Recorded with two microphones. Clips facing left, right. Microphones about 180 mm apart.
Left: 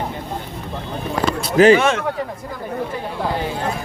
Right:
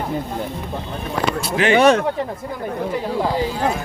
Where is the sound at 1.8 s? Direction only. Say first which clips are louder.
Right 6 dB; 35° right (ahead or behind).